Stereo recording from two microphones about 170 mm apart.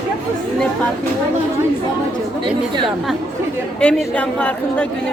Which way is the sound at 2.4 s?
25° right (ahead or behind).